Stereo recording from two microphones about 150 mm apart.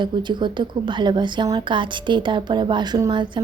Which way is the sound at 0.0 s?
30° right (ahead or behind).